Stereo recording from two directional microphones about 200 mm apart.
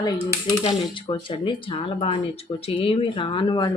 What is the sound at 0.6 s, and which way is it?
Speech, 30° left (ahead or behind).